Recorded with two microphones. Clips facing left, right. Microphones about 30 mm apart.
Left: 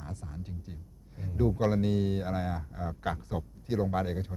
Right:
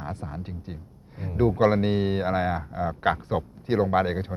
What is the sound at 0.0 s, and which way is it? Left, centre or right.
Speech, right.